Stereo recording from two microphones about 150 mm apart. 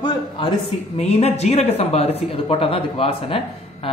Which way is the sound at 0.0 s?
35° left (ahead or behind).